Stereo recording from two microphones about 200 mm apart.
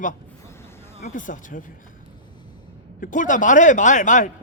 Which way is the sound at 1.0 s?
40° left (ahead or behind).